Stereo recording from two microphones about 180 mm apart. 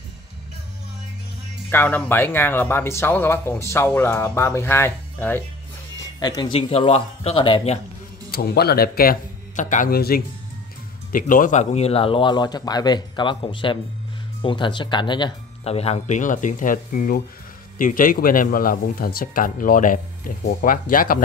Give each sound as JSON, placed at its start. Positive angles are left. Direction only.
{"t": 1.7, "sound": "speech", "side_deg": 10}
{"t": 6.1, "sound": "speech", "side_deg": 20}
{"t": 6.7, "sound": "speech", "side_deg": 35}
{"t": 8.3, "sound": "speech", "side_deg": 60}